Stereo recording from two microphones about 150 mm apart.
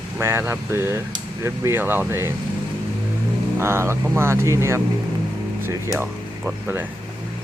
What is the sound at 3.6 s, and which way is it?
Speech, 15° right (ahead or behind).